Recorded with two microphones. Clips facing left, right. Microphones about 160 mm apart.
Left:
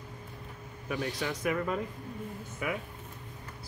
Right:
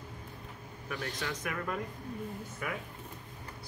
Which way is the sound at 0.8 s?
15° left (ahead or behind).